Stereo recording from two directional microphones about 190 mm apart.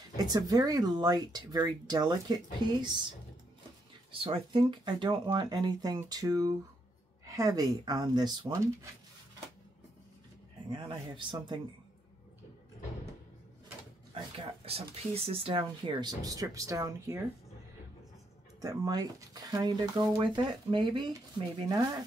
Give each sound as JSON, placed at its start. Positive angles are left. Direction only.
{"t": 0.2, "sound": "speech", "side_deg": -20}
{"t": 4.1, "sound": "speech", "side_deg": -30}
{"t": 10.7, "sound": "speech", "side_deg": -25}
{"t": 14.1, "sound": "speech", "side_deg": -30}
{"t": 18.6, "sound": "speech", "side_deg": -20}